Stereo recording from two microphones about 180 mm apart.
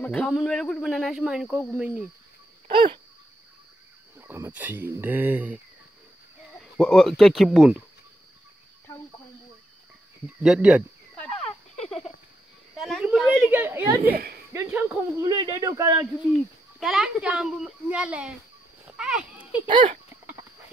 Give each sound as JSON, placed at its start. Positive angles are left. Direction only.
{"t": 0.0, "sound": "speech", "side_deg": 5}
{"t": 2.7, "sound": "a sound", "side_deg": -30}
{"t": 4.2, "sound": "speech", "side_deg": -10}
{"t": 6.6, "sound": "speech", "side_deg": 5}
{"t": 10.4, "sound": "speech", "side_deg": -5}
{"t": 12.8, "sound": "a woman's voice", "side_deg": 0}
{"t": 14.0, "sound": "speech", "side_deg": -60}
{"t": 14.5, "sound": "speech", "side_deg": -15}
{"t": 16.3, "sound": "speech", "side_deg": 0}
{"t": 19.7, "sound": "a sound", "side_deg": -25}